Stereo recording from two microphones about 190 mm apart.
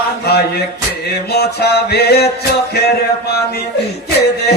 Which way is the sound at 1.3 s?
55° left (ahead or behind).